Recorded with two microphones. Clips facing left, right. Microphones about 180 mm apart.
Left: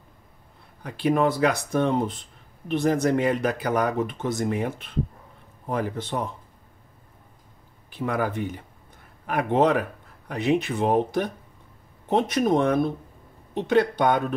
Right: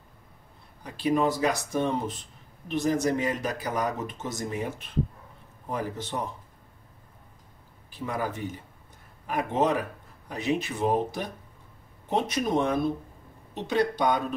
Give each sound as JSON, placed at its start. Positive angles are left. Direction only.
{"t": 0.8, "sound": "speech", "side_deg": 60}
{"t": 7.9, "sound": "speech", "side_deg": 60}